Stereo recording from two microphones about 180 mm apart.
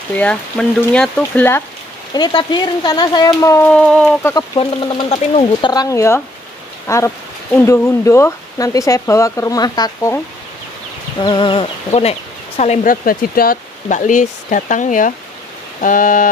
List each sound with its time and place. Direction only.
0.1 s speech: 5° left (ahead or behind)
2.1 s speech: 25° left (ahead or behind)
3.7 s speech: 5° left (ahead or behind)
4.6 s speech: 30° left (ahead or behind)
11.1 s speech: 25° left (ahead or behind)
12.9 s speech: 55° left (ahead or behind)